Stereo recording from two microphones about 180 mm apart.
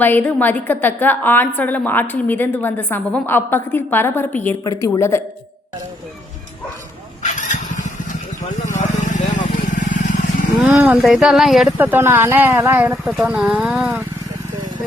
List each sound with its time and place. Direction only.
0.0 s a woman's voice: 10° left (ahead or behind)
7.2 s vehicle: 45° left (ahead or behind)
8.8 s vehicle: 45° left (ahead or behind)
10.6 s speech: 10° right (ahead or behind)
13.1 s speech: centre (ahead or behind)